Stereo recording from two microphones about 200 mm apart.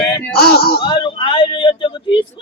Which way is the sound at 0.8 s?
25° left (ahead or behind).